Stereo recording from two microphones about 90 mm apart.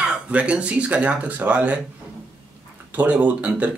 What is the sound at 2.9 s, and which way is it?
Speech, 15° right (ahead or behind).